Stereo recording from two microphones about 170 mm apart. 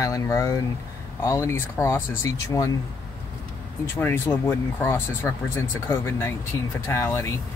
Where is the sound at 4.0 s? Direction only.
15° left (ahead or behind).